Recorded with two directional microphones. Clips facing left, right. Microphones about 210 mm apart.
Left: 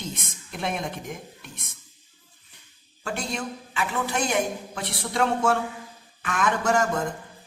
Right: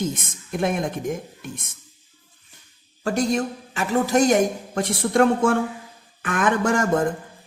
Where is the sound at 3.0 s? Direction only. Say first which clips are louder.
Right 9 dB; 40° right (ahead or behind).